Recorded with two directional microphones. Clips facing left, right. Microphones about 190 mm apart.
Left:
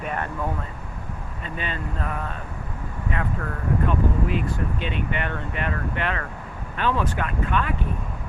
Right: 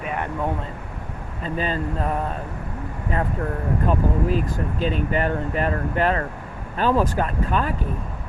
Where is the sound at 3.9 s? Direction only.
40° right (ahead or behind).